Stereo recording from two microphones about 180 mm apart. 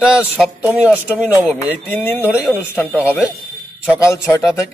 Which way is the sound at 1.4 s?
10° left (ahead or behind).